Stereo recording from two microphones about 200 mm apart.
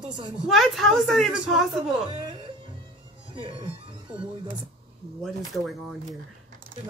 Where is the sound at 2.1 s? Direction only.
25° right (ahead or behind).